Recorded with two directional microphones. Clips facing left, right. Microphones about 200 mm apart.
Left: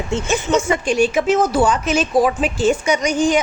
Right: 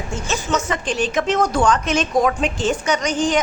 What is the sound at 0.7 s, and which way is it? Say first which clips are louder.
Speech: left 6 dB; 10° left (ahead or behind).